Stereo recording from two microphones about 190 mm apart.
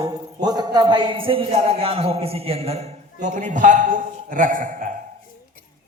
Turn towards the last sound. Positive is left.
turn(degrees=-45)  # may be behind; listen again after turning